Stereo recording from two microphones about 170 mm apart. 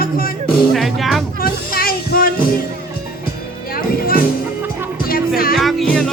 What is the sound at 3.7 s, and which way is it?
Music, 60° left (ahead or behind).